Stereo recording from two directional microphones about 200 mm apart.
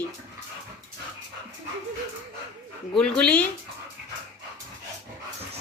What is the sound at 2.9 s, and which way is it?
Speech, 5° left (ahead or behind).